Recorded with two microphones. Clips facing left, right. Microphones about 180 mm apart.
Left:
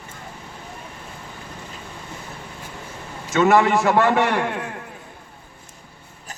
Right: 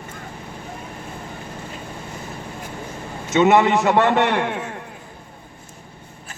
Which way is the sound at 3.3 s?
20° right (ahead or behind).